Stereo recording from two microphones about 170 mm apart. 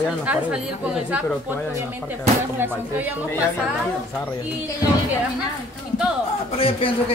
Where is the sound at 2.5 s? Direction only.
10° right (ahead or behind).